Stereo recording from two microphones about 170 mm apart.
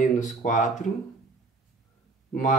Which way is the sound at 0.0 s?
45° left (ahead or behind).